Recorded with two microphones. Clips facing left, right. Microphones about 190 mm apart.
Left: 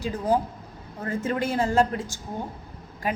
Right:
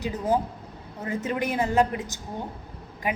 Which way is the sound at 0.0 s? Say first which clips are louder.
Left 1 dB; 20° right (ahead or behind).